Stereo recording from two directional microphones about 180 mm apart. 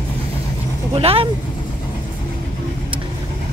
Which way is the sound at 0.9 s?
30° right (ahead or behind).